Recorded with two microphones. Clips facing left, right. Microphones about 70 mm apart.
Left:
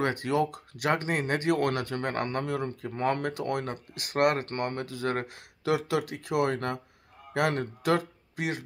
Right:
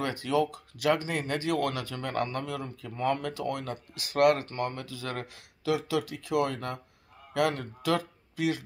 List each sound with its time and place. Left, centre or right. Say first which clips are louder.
0.0 s speech: left 1 dB; left